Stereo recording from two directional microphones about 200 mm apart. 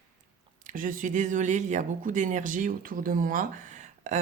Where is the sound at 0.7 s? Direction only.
40° right (ahead or behind).